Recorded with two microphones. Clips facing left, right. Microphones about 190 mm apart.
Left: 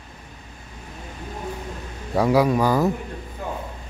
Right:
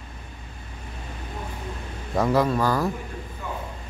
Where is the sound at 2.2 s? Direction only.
10° left (ahead or behind).